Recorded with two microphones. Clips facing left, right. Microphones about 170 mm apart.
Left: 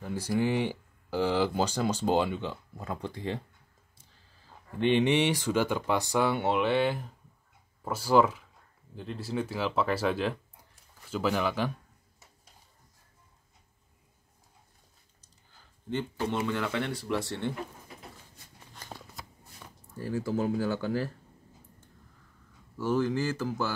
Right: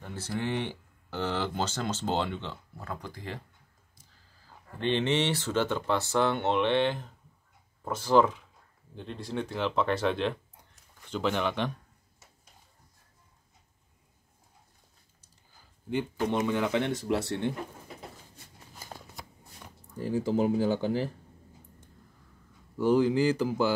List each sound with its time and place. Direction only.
0.0 s speech: 10° left (ahead or behind)
4.7 s speech: 15° left (ahead or behind)
15.9 s speech: 15° right (ahead or behind)
18.7 s shuffling cards: 5° right (ahead or behind)
20.0 s speech: 15° right (ahead or behind)
22.8 s speech: 15° right (ahead or behind)